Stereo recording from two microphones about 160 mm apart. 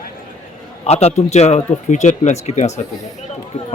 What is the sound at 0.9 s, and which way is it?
Speech, 40° left (ahead or behind).